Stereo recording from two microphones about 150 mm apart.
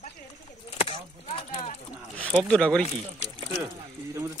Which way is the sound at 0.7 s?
40° left (ahead or behind).